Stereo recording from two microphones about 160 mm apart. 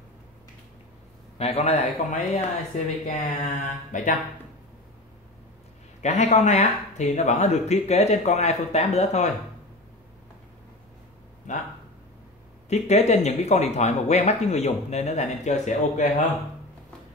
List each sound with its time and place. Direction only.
1.4 s speech: 40° left (ahead or behind)
6.0 s speech: 45° left (ahead or behind)
11.5 s speech: 50° left (ahead or behind)
12.6 s speech: 45° left (ahead or behind)